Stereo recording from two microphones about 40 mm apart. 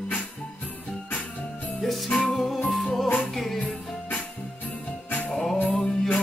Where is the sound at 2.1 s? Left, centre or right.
Centre.